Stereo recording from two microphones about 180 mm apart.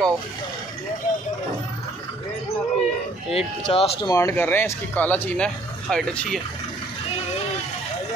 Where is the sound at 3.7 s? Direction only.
35° left (ahead or behind).